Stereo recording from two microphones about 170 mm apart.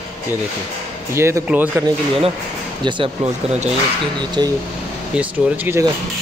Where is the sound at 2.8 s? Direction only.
30° right (ahead or behind).